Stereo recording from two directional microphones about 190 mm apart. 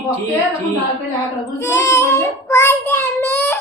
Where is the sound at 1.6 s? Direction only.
15° left (ahead or behind).